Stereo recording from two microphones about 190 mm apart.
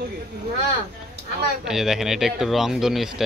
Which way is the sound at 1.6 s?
5° right (ahead or behind).